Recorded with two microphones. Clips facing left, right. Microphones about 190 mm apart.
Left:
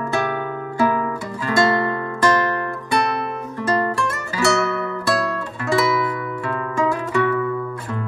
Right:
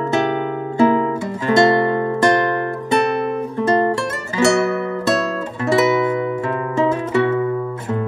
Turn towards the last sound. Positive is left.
turn(degrees=-25)  # may be behind; listen again after turning